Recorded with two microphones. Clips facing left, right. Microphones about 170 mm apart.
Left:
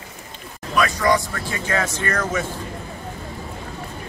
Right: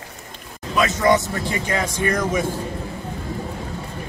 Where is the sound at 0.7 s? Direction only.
20° right (ahead or behind).